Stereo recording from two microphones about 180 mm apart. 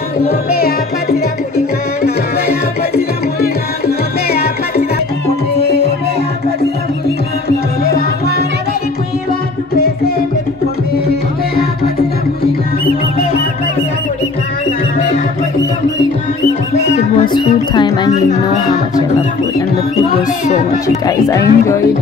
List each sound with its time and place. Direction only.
0.2 s music: 60° left (ahead or behind)
3.3 s music: 60° left (ahead or behind)
7.4 s music: 60° left (ahead or behind)
17.3 s speech: 25° left (ahead or behind)
20.8 s speech: 20° left (ahead or behind)